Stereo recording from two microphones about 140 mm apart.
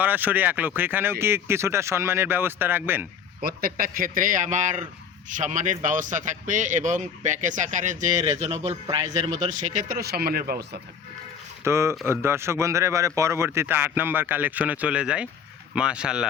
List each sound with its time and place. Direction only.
0.0 s speech: 15° right (ahead or behind)
3.4 s a man's voice: 90° right; by 8.1 s 60° right (ahead or behind)
8.4 s a man's voice: 45° right (ahead or behind)
9.5 s speech: 60° right (ahead or behind); by 10.6 s 90° right
11.6 s speech: 20° right (ahead or behind)